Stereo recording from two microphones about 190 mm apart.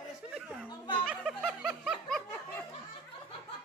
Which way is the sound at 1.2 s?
Centre (ahead or behind).